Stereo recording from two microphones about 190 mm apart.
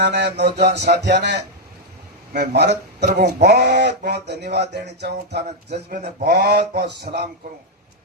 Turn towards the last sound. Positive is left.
turn(degrees=-55)  # may be behind; listen again after turning